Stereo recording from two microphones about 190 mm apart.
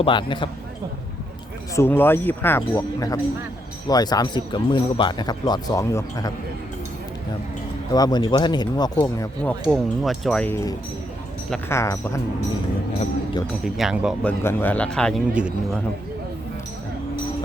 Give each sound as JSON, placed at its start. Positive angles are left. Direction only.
{"t": 0.0, "sound": "speech", "side_deg": 25}
{"t": 1.7, "sound": "speech", "side_deg": 10}
{"t": 7.9, "sound": "speech", "side_deg": 20}
{"t": 9.4, "sound": "speech", "side_deg": 5}
{"t": 13.7, "sound": "speech", "side_deg": 0}
{"t": 14.4, "sound": "speech", "side_deg": 10}
{"t": 15.3, "sound": "a man's voice", "side_deg": -5}